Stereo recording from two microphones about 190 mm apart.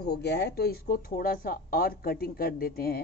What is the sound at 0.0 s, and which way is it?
A woman's voice, 60° left (ahead or behind).